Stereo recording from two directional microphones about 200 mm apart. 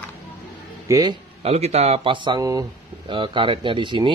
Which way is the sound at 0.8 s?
15° right (ahead or behind).